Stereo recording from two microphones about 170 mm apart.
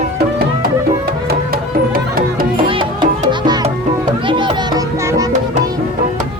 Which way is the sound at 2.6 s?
30° right (ahead or behind).